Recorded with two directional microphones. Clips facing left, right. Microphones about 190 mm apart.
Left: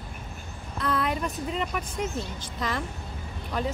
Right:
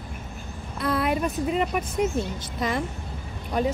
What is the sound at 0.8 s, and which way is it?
Speech, 10° right (ahead or behind).